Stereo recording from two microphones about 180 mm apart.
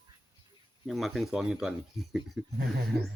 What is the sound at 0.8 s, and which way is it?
Speech, centre (ahead or behind).